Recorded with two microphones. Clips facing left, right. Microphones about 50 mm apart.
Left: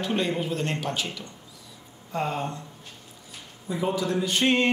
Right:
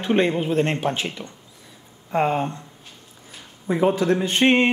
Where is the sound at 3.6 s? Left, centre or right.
Right.